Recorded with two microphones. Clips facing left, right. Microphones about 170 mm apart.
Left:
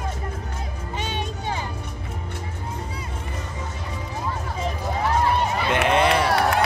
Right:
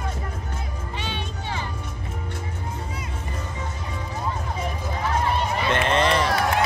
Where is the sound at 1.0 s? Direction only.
45° left (ahead or behind).